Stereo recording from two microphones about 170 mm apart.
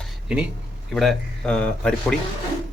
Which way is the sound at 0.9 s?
Centre (ahead or behind).